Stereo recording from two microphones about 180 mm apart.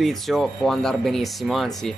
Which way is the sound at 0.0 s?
Centre (ahead or behind).